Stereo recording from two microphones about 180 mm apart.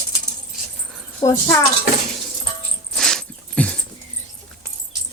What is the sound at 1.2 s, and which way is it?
Speech, 20° left (ahead or behind).